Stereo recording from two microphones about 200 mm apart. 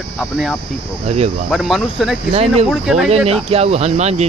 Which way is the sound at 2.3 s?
30° right (ahead or behind).